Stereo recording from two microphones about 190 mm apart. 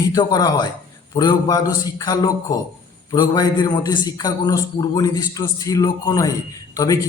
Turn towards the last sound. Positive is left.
turn(degrees=20)  # may be behind; listen again after turning